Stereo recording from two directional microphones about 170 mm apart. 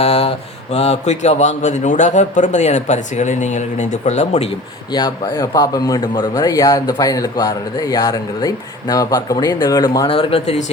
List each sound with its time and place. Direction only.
0.0 s speech: 35° left (ahead or behind)
4.9 s speech: 25° left (ahead or behind)
10.1 s speech: 35° left (ahead or behind)